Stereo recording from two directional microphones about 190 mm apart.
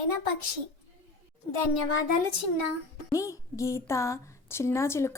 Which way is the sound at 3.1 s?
15° left (ahead or behind).